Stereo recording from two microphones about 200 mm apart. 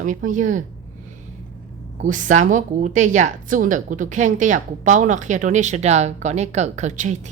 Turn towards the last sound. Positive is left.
turn(degrees=-35)  # may be behind; listen again after turning